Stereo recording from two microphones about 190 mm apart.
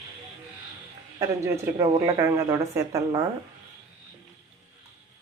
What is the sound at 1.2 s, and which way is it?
A woman's voice, 20° right (ahead or behind).